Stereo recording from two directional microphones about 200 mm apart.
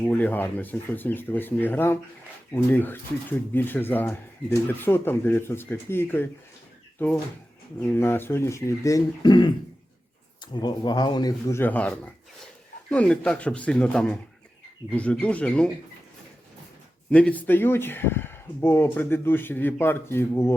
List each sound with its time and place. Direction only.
0.0 s speech: 10° left (ahead or behind)
7.8 s speech: 10° left (ahead or behind)
17.1 s speech: 5° left (ahead or behind)